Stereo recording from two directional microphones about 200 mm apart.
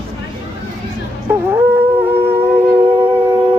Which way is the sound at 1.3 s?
10° right (ahead or behind).